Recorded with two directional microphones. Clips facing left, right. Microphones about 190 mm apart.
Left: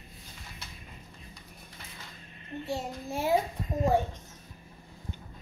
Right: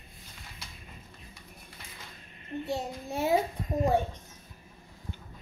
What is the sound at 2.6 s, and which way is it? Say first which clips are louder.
Speech: left 1 dB; 20° right (ahead or behind).